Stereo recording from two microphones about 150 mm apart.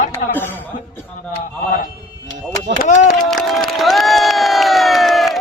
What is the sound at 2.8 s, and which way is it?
Speech, 55° left (ahead or behind).